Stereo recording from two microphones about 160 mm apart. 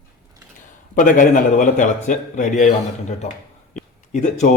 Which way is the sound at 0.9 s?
55° left (ahead or behind).